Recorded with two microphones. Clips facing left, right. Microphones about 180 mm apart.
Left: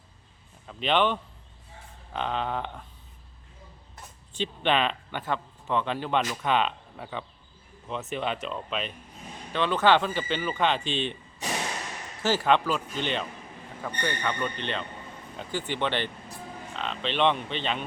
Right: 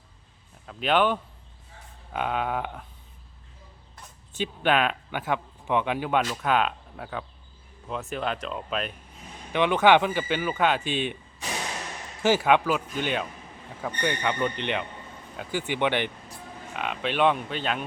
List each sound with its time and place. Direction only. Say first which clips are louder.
0.7 s a man's voice: right 2 dB; 5° right (ahead or behind)
4.4 s a man's voice: right 2 dB; 5° right (ahead or behind)
9.5 s speech: right 3 dB; 15° right (ahead or behind)
12.2 s speech: right 3 dB; 10° right (ahead or behind)